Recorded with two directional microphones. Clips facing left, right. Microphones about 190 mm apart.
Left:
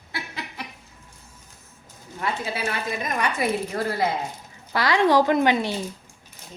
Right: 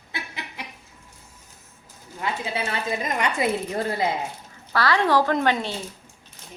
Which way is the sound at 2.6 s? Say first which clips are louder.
Even; 25° right (ahead or behind).